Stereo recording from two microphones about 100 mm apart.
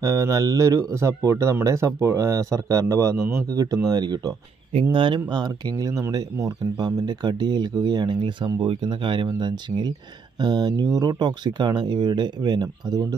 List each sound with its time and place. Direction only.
0.0 s speech: 30° right (ahead or behind)
4.9 s speech: 55° right (ahead or behind)